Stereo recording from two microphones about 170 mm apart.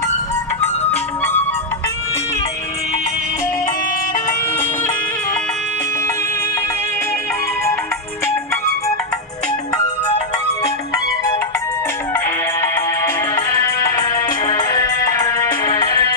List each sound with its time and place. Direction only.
0.9 s music: 10° left (ahead or behind)
13.9 s music: 25° left (ahead or behind)